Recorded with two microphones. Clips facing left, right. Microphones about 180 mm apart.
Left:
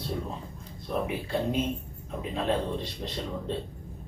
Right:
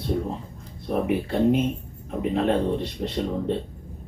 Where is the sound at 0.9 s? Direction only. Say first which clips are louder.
Right 6 dB; 60° right (ahead or behind).